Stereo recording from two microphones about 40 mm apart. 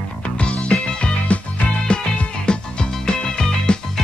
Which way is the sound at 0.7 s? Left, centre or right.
Left.